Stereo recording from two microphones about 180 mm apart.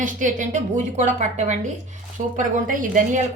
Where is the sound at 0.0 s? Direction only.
45° right (ahead or behind).